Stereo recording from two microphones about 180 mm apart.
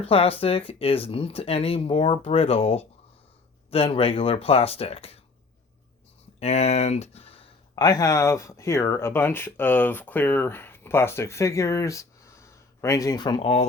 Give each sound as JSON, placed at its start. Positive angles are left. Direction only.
{"t": 0.0, "sound": "speech", "side_deg": 30}
{"t": 6.4, "sound": "speech", "side_deg": 35}